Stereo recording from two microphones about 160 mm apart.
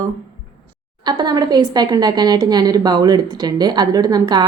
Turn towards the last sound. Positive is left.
turn(degrees=-25)  # may be behind; listen again after turning